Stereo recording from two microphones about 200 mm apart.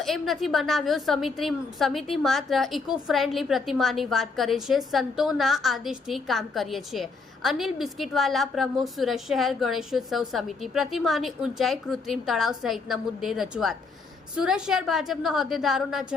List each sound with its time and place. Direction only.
0.0 s a woman's voice: centre (ahead or behind)